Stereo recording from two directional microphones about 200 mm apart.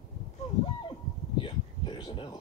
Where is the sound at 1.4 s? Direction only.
20° left (ahead or behind).